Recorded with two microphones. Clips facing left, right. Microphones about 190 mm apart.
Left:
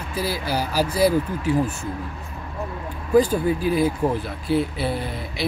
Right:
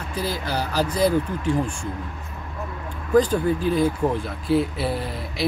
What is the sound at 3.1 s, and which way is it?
Speech, 10° left (ahead or behind).